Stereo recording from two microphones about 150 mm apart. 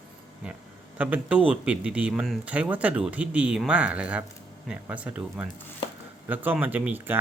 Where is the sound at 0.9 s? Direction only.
10° right (ahead or behind).